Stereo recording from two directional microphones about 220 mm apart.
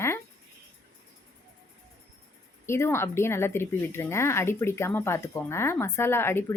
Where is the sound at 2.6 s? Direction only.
10° left (ahead or behind).